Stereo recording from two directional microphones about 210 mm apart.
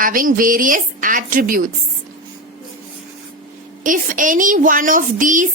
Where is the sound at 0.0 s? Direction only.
40° right (ahead or behind).